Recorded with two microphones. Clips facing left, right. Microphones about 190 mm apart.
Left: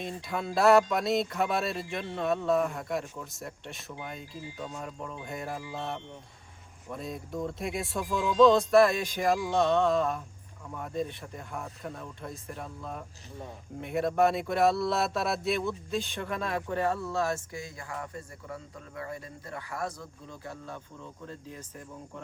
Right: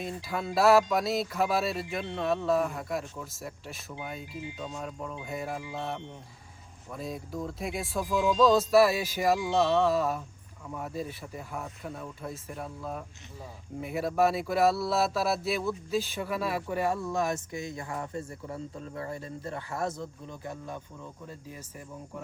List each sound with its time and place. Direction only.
0.0 s speech: centre (ahead or behind)
4.4 s speech: 20° right (ahead or behind)
4.8 s speech: centre (ahead or behind)
6.9 s speech: centre (ahead or behind)